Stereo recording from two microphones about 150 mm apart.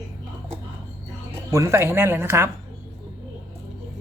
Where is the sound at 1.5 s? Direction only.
20° right (ahead or behind).